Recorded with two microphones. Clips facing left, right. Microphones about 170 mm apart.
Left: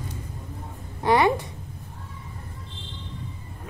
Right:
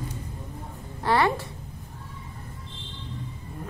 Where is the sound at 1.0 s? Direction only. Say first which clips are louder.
Left 3 dB; 15° left (ahead or behind).